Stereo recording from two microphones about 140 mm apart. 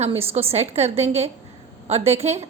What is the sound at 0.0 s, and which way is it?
A woman's voice, 45° right (ahead or behind).